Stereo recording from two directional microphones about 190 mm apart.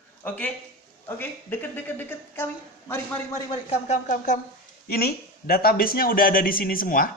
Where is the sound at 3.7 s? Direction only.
40° left (ahead or behind).